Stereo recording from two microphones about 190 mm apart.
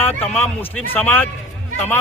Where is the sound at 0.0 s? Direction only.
10° left (ahead or behind).